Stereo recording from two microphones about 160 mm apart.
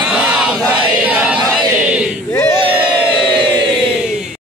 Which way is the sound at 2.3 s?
15° left (ahead or behind).